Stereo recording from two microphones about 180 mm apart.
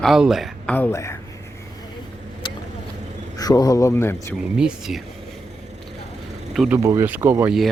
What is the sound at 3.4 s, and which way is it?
Speech, 20° left (ahead or behind).